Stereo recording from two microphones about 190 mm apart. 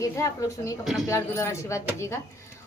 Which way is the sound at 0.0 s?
15° left (ahead or behind).